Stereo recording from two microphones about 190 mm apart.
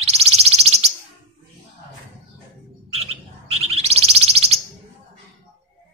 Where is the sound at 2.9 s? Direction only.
30° right (ahead or behind).